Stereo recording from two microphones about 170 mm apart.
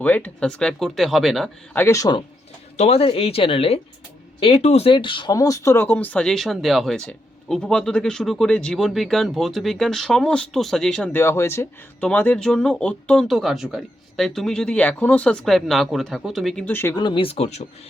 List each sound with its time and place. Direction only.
0.0 s speech: 10° left (ahead or behind)
1.8 s speech: 20° left (ahead or behind)
2.7 s speech: 40° left (ahead or behind); by 16.9 s 10° left (ahead or behind)
16.9 s speech: 25° left (ahead or behind)